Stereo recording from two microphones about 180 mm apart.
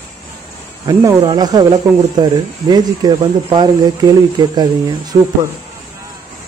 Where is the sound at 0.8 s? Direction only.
20° right (ahead or behind).